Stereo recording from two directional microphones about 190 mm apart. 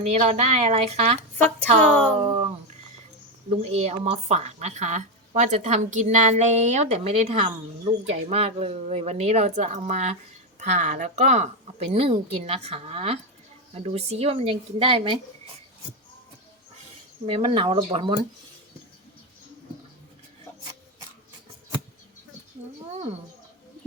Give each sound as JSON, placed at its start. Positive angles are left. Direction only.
{"t": 0.0, "sound": "a woman's voice", "side_deg": -35}
{"t": 1.9, "sound": "speech", "side_deg": 5}
{"t": 3.6, "sound": "a woman's voice", "side_deg": -35}
{"t": 17.2, "sound": "speech", "side_deg": -30}